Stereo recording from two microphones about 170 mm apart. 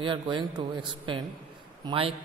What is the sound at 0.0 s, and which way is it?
A man's voice, 30° right (ahead or behind).